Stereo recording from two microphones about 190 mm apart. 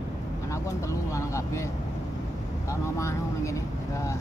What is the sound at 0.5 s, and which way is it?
Speech, 15° left (ahead or behind).